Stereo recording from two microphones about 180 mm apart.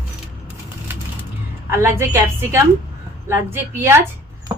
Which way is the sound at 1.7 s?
15° right (ahead or behind).